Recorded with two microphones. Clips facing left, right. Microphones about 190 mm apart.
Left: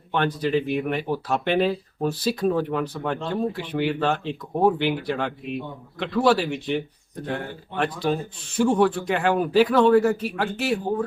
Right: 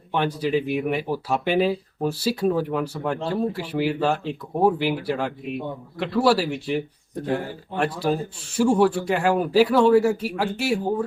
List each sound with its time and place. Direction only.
0.1 s speech: 10° right (ahead or behind)